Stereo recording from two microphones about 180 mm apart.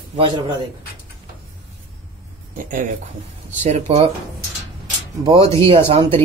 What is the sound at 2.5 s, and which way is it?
Speech, 45° right (ahead or behind).